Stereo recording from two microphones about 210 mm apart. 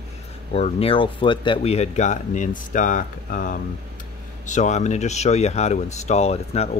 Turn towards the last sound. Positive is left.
turn(degrees=30)  # may be behind; listen again after turning